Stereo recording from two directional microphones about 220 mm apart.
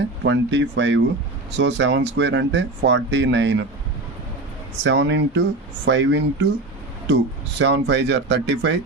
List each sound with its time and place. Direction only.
0.3 s speech: 55° right (ahead or behind)
4.8 s speech: 55° right (ahead or behind)
7.6 s speech: 50° right (ahead or behind)